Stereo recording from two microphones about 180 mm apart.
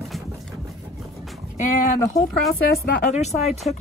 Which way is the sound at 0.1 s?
Centre (ahead or behind).